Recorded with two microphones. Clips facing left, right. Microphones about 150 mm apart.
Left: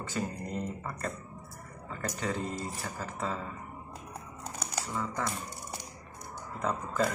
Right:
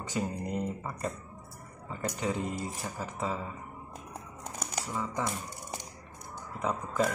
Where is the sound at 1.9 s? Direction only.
15° right (ahead or behind).